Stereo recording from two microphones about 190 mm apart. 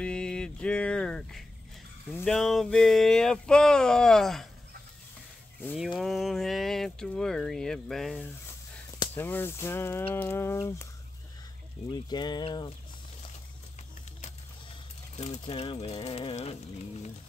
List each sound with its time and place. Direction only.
0.0 s speech: 5° left (ahead or behind)
2.2 s a sound: centre (ahead or behind)
5.8 s speech: centre (ahead or behind)
11.9 s speech: 20° left (ahead or behind)
15.1 s speech: 35° left (ahead or behind)